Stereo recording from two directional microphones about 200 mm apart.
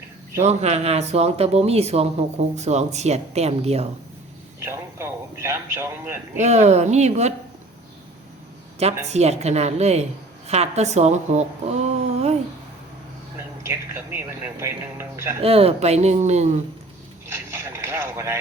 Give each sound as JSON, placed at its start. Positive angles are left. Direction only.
{"t": 0.4, "sound": "speech", "side_deg": -35}
{"t": 4.6, "sound": "speech", "side_deg": -15}
{"t": 6.4, "sound": "speech", "side_deg": -35}
{"t": 8.8, "sound": "a woman's voice", "side_deg": -30}
{"t": 13.6, "sound": "speech", "side_deg": -15}
{"t": 15.4, "sound": "speech", "side_deg": -30}
{"t": 17.2, "sound": "a sound", "side_deg": -10}